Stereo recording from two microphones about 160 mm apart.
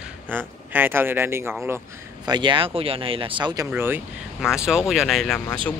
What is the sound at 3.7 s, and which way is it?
Speech, 10° right (ahead or behind).